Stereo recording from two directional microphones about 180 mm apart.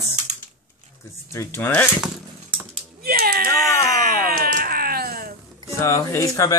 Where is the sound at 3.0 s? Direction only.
55° right (ahead or behind).